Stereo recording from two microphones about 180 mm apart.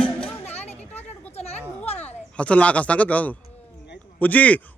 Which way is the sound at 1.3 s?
35° left (ahead or behind).